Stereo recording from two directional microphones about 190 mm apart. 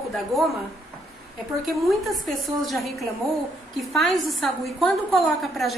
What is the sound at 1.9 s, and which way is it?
A woman's voice, centre (ahead or behind).